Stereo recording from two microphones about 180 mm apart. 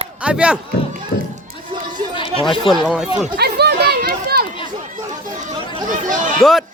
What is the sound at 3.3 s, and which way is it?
Chatter, 65° right (ahead or behind).